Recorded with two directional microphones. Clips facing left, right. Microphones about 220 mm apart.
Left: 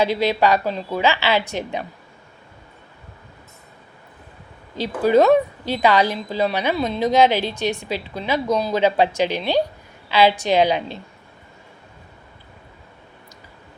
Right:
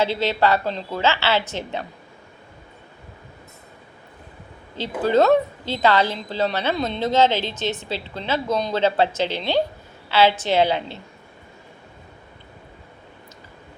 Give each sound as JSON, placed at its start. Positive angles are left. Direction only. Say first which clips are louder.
{"t": 0.0, "sound": "a woman's voice", "louder": "left 2 dB", "side_deg": 15}
{"t": 5.0, "sound": "a woman's voice", "louder": "left 2 dB", "side_deg": 10}